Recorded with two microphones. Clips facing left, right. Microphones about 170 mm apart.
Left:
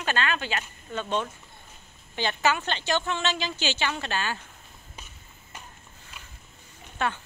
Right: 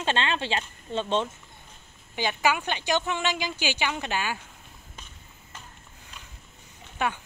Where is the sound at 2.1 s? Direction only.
10° right (ahead or behind).